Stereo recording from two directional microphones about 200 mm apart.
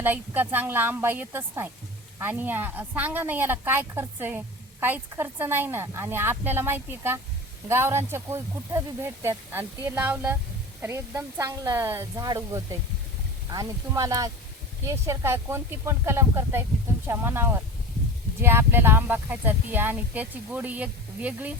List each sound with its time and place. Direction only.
0.0 s a woman's voice: 10° right (ahead or behind)